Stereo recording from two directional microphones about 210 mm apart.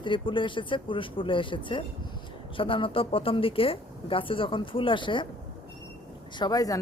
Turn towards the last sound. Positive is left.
turn(degrees=15)  # may be behind; listen again after turning